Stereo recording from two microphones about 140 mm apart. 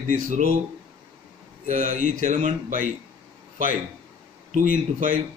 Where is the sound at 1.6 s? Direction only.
65° right (ahead or behind).